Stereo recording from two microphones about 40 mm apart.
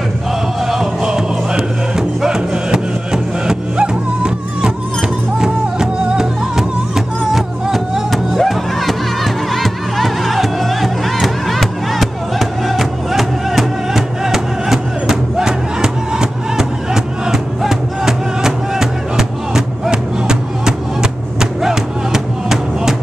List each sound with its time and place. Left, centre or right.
0.7 s music: centre